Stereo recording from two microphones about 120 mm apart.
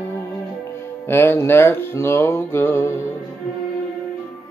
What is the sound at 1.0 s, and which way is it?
Music, 20° left (ahead or behind).